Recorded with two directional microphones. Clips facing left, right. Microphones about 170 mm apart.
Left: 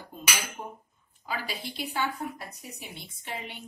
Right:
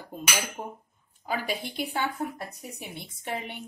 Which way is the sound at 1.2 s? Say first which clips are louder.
Right 4 dB; 50° right (ahead or behind).